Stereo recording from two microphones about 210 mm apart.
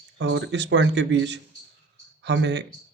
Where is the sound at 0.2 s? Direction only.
55° right (ahead or behind).